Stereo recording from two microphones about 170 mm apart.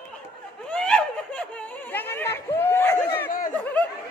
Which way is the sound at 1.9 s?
10° left (ahead or behind).